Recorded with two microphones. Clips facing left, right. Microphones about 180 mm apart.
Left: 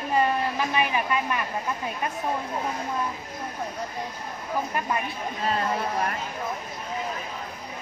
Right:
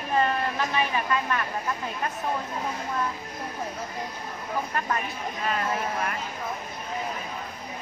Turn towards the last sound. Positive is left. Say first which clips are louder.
# left 2 dB
turn(degrees=35)  # may be behind; listen again after turning